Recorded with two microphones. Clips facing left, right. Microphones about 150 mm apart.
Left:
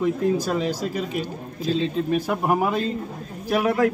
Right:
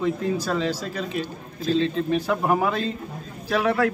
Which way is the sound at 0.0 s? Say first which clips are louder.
Left 3 dB; 15° left (ahead or behind).